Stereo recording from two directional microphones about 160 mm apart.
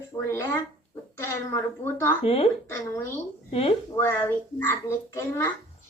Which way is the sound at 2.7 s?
15° left (ahead or behind).